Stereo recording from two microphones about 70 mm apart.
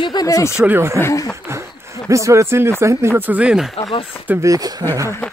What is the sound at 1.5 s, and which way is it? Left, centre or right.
Speech, right.